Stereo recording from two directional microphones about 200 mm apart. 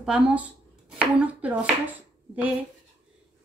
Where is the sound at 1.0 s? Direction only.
5° right (ahead or behind).